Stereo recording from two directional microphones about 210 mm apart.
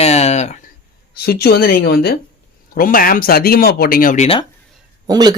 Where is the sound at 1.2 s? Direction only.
50° left (ahead or behind); by 4.4 s 30° left (ahead or behind).